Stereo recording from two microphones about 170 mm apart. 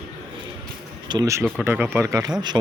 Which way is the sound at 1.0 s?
20° right (ahead or behind).